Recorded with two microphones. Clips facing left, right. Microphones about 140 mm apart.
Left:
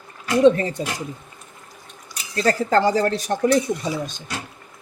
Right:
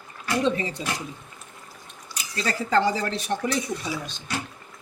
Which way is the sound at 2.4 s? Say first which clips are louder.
Left 5 dB; 45° left (ahead or behind).